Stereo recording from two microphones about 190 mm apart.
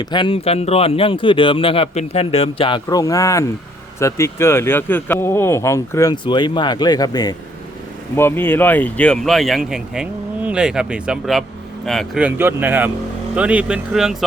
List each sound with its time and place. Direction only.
0.0 s speech: 25° left (ahead or behind); by 14.3 s centre (ahead or behind)